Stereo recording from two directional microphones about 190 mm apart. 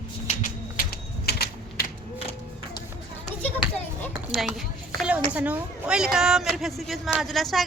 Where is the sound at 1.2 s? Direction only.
55° left (ahead or behind).